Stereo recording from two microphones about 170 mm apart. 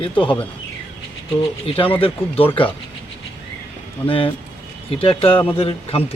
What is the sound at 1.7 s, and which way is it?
Speech, 30° left (ahead or behind).